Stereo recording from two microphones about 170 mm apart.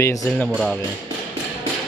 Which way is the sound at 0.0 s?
20° left (ahead or behind).